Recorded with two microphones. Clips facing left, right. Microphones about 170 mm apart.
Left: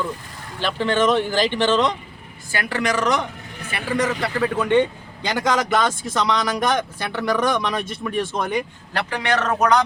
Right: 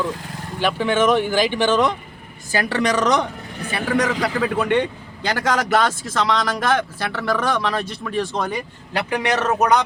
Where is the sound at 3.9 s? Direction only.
90° right.